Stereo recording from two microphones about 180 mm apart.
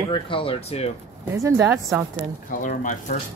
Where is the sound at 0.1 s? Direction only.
30° left (ahead or behind).